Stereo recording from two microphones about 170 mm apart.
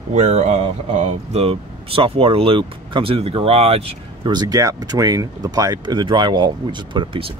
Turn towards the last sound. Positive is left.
turn(degrees=-30)  # may be behind; listen again after turning